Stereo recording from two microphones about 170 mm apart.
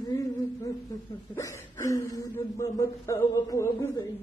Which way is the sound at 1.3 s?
15° left (ahead or behind).